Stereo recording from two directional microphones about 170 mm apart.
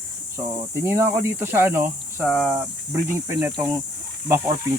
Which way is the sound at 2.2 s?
Centre (ahead or behind).